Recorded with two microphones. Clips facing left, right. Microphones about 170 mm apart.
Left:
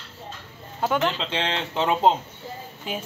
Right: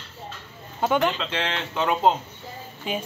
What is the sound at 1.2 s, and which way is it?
Speech, 25° left (ahead or behind).